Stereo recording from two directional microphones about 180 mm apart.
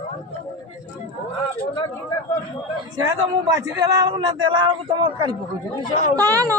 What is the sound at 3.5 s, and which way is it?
A man's voice, 20° right (ahead or behind).